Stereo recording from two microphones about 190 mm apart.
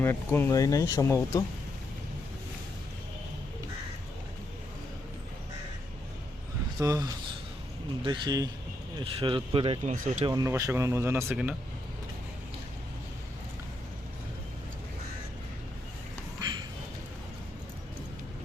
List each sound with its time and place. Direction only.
0.0 s speech: 10° left (ahead or behind)
6.7 s speech: 15° right (ahead or behind); by 10.2 s 40° right (ahead or behind)
10.2 s speech: 20° right (ahead or behind)
16.4 s a sound: 20° right (ahead or behind)